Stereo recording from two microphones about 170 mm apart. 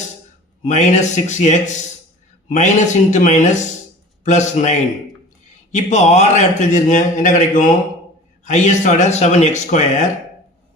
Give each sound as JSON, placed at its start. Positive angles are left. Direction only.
{"t": 0.6, "sound": "a man's voice", "side_deg": 45}
{"t": 5.7, "sound": "a man's voice", "side_deg": 45}